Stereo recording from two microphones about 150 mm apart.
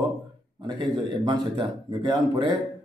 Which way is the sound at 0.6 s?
30° right (ahead or behind).